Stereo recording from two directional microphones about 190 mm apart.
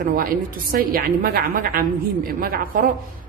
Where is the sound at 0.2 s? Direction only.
50° right (ahead or behind).